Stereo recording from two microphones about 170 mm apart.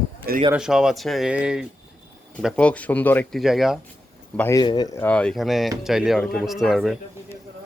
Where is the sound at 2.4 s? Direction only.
5° left (ahead or behind).